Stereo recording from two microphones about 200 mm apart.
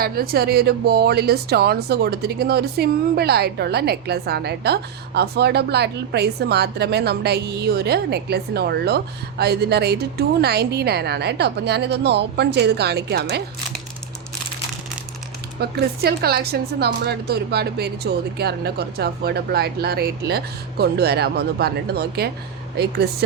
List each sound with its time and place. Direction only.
0.0 s a woman's voice: 50° right (ahead or behind)
15.6 s speech: 50° right (ahead or behind)